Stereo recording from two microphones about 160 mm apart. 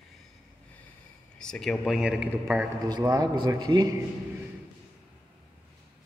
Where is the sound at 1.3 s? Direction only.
5° left (ahead or behind).